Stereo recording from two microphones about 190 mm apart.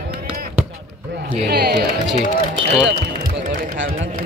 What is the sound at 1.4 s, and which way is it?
Speech, 60° right (ahead or behind).